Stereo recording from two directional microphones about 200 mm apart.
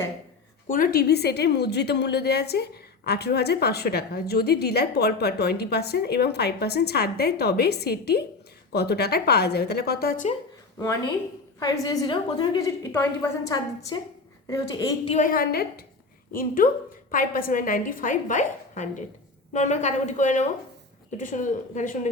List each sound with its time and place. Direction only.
0.7 s a woman's voice: 45° left (ahead or behind)
11.6 s a woman's voice: 20° left (ahead or behind)
15.1 s a woman's voice: 45° left (ahead or behind)